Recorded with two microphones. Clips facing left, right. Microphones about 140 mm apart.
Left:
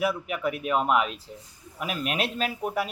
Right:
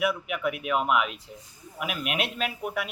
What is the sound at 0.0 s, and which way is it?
Speech, 35° left (ahead or behind).